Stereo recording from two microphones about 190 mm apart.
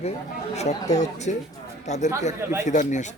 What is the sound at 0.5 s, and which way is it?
Speech, 35° left (ahead or behind).